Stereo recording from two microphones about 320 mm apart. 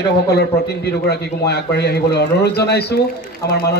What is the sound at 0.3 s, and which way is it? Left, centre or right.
A man's voice, left.